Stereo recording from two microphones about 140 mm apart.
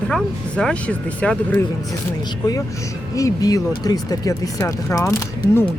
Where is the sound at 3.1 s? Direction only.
25° left (ahead or behind).